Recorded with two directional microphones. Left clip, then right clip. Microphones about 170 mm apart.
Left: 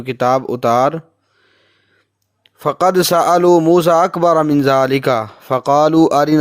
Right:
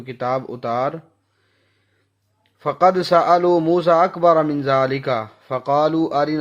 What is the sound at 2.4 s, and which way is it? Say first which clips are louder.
Speech: left 2 dB; 60° left (ahead or behind).